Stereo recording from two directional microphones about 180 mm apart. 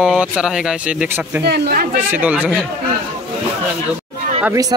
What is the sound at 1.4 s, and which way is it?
Speech, 65° right (ahead or behind).